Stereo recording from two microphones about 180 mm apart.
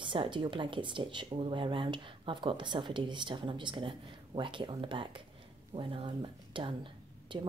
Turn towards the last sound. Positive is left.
turn(degrees=-30)  # may be behind; listen again after turning